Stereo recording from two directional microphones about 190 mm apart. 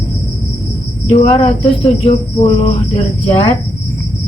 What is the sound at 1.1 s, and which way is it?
Cricket, 30° left (ahead or behind).